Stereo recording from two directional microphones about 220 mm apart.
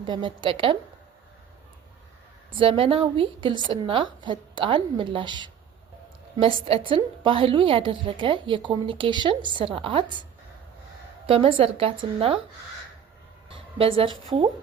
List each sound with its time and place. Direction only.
0.0 s a woman's voice: 20° right (ahead or behind)
2.6 s a woman's voice: 25° right (ahead or behind)
11.3 s a woman's voice: 25° right (ahead or behind)
13.5 s a woman's voice: 25° right (ahead or behind)